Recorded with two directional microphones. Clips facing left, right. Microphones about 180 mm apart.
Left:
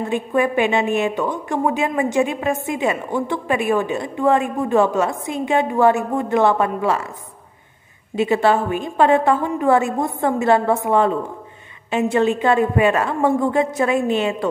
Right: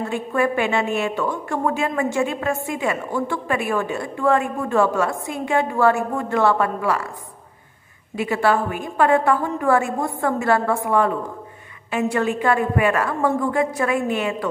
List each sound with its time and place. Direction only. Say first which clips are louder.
0.0 s a woman's voice: left 2 dB; 20° left (ahead or behind)
8.2 s a woman's voice: left 3 dB; 25° left (ahead or behind)